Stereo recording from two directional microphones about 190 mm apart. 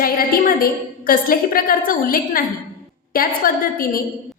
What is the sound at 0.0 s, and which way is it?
A woman's voice, 50° left (ahead or behind).